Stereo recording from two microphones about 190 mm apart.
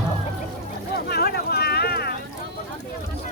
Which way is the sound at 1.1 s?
55° left (ahead or behind).